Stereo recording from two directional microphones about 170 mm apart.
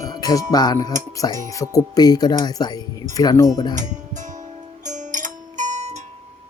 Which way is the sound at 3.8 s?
45° right (ahead or behind).